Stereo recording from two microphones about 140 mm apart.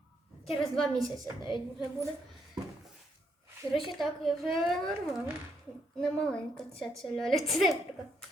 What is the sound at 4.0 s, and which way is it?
A woman's voice, centre (ahead or behind).